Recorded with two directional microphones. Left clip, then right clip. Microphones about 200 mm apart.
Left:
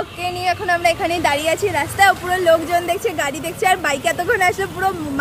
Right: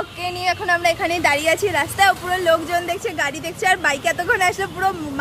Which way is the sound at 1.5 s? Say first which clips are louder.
Even; 20° right (ahead or behind).